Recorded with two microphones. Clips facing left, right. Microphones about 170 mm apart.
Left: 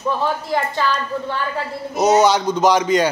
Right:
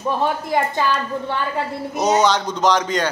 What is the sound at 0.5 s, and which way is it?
Speech, 15° right (ahead or behind).